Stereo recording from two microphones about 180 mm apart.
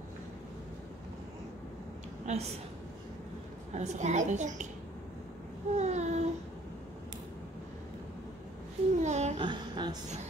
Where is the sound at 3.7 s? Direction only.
40° right (ahead or behind).